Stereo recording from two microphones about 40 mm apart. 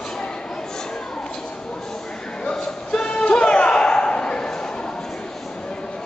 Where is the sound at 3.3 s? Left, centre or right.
Left.